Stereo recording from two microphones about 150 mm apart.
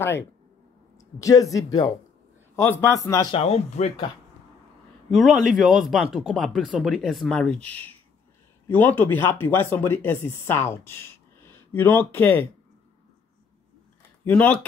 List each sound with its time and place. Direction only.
0.9 s speech: 20° left (ahead or behind)
3.3 s speech: 45° left (ahead or behind)
5.1 s speech: centre (ahead or behind)
14.2 s speech: 10° left (ahead or behind)